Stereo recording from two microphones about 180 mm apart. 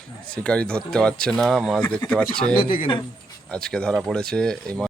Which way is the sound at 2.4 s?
50° left (ahead or behind).